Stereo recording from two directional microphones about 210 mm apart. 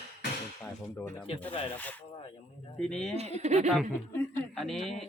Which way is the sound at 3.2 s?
30° right (ahead or behind).